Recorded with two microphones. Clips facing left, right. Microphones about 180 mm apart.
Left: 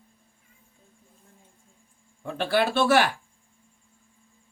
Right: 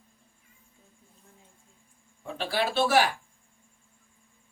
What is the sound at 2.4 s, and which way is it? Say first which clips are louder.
Speech: left 4 dB; 55° left (ahead or behind).